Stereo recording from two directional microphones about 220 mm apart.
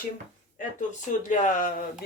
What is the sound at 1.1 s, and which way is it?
Speech, 35° left (ahead or behind).